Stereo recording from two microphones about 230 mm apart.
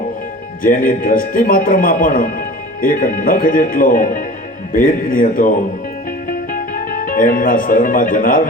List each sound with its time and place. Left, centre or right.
0.6 s speech: left
6.2 s music: left